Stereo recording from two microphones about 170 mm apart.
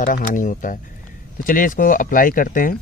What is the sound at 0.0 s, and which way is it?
Speech, 50° left (ahead or behind).